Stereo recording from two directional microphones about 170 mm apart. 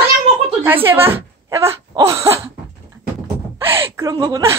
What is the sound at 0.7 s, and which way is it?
Speech, 10° right (ahead or behind).